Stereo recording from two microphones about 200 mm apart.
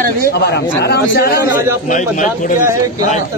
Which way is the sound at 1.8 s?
40° left (ahead or behind).